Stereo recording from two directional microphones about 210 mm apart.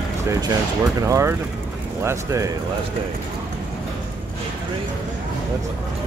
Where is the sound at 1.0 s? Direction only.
15° right (ahead or behind).